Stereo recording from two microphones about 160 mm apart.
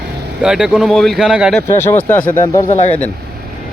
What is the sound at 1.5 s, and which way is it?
Speech, 10° left (ahead or behind).